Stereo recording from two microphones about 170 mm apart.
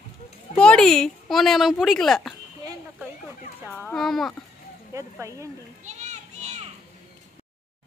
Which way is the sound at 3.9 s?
Centre (ahead or behind).